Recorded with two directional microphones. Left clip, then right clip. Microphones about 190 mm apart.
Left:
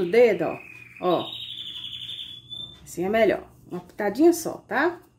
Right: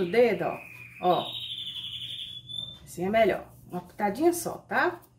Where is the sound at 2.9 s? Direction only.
50° left (ahead or behind).